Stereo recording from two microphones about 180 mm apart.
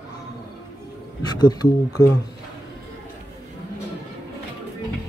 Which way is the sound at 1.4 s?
20° left (ahead or behind).